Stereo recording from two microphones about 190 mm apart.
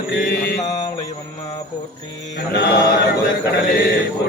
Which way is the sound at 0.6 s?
20° left (ahead or behind).